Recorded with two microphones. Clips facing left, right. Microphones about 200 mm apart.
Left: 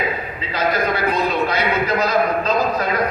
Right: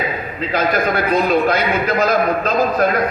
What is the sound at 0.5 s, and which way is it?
A man's voice, 50° right (ahead or behind).